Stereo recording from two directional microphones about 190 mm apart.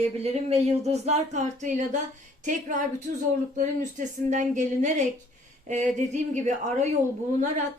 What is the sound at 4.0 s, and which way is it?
Speech, 40° right (ahead or behind).